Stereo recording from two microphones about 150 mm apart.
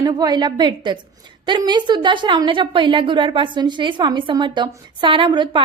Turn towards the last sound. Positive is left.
turn(degrees=-35)  # may be behind; listen again after turning